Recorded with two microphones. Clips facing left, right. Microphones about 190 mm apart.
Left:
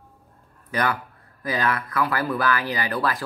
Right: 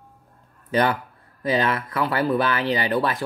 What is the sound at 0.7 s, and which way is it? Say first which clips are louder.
A man's voice: right 4 dB; 25° right (ahead or behind).